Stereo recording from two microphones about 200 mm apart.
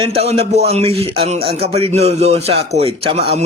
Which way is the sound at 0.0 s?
30° right (ahead or behind).